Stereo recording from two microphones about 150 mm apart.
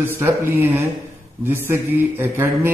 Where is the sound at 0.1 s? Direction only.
15° right (ahead or behind).